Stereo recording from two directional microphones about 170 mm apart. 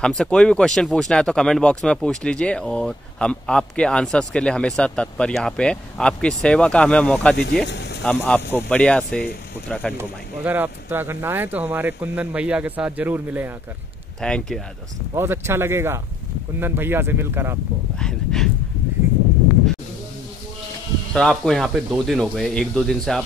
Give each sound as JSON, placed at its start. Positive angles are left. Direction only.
{"t": 0.2, "sound": "speech", "side_deg": 5}
{"t": 7.6, "sound": "speech", "side_deg": 90}
{"t": 8.0, "sound": "speech", "side_deg": 5}
{"t": 10.4, "sound": "speech", "side_deg": -10}
{"t": 14.2, "sound": "speech", "side_deg": 5}
{"t": 15.1, "sound": "speech", "side_deg": -15}
{"t": 17.9, "sound": "speech", "side_deg": 5}
{"t": 21.1, "sound": "speech", "side_deg": 0}